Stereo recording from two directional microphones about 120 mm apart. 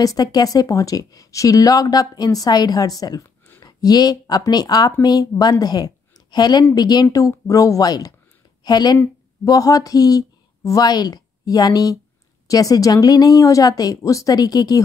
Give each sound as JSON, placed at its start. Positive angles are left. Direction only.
{"t": 0.0, "sound": "a woman's voice", "side_deg": 30}